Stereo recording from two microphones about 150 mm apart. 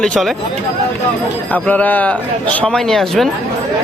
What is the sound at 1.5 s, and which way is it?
Speech, 10° left (ahead or behind).